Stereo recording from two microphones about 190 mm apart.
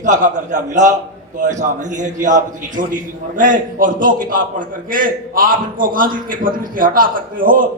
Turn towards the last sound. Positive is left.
turn(degrees=-45)  # may be behind; listen again after turning